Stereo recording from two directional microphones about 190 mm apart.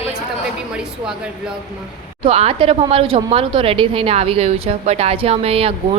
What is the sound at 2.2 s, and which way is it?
A woman's voice, 30° right (ahead or behind).